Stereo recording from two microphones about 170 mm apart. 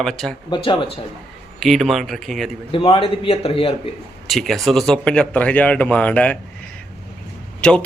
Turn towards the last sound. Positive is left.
turn(degrees=5)  # may be behind; listen again after turning